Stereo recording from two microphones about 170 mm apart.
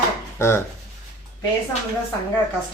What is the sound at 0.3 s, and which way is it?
Speech, 15° left (ahead or behind).